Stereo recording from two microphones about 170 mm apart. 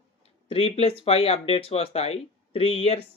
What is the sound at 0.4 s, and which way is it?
Speech, 35° left (ahead or behind).